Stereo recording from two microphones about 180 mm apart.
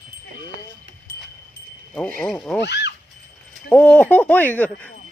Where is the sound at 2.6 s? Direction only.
70° left (ahead or behind).